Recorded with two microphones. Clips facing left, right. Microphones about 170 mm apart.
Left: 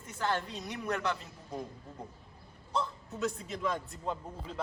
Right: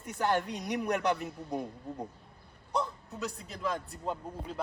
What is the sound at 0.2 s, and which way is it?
Speech, 15° right (ahead or behind).